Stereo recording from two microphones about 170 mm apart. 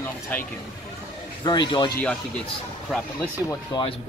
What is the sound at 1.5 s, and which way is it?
Speech, 25° left (ahead or behind).